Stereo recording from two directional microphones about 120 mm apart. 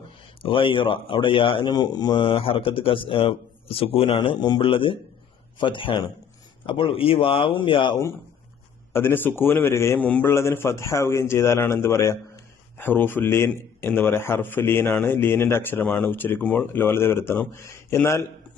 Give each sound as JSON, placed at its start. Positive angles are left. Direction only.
{"t": 0.4, "sound": "speech", "side_deg": 45}
{"t": 8.9, "sound": "a man's voice", "side_deg": 20}
{"t": 10.0, "sound": "a man's voice", "side_deg": 10}
{"t": 10.3, "sound": "a man's voice", "side_deg": 20}